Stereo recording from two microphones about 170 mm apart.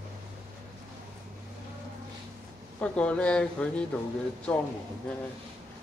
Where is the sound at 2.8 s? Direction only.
5° left (ahead or behind).